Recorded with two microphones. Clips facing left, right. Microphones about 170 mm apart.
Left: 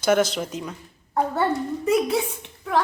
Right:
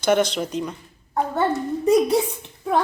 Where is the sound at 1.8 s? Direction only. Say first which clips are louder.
Right 4 dB; 35° right (ahead or behind).